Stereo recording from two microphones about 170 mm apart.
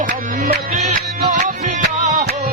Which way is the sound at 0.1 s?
55° right (ahead or behind).